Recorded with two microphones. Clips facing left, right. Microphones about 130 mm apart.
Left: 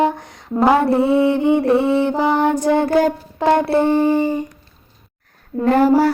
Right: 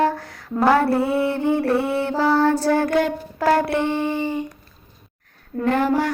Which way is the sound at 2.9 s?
35° left (ahead or behind).